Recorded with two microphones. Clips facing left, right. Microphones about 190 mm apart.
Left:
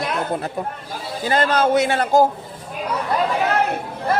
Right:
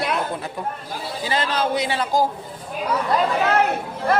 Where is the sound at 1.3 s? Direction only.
50° left (ahead or behind).